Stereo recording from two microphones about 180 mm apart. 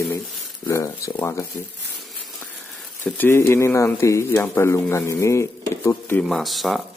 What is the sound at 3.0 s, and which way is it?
Speech, 10° left (ahead or behind).